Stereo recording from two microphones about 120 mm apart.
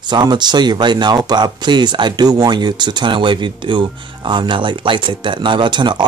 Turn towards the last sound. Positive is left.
turn(degrees=-40)  # may be behind; listen again after turning